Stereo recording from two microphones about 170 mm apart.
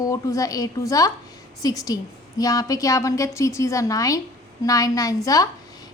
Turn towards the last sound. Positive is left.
turn(degrees=20)  # may be behind; listen again after turning